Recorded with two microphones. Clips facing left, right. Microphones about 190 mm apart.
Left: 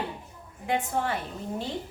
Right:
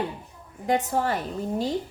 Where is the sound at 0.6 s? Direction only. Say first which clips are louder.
Right 4 dB; 40° right (ahead or behind).